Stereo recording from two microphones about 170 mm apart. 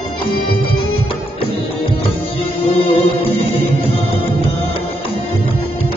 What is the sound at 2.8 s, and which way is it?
Music, 35° left (ahead or behind).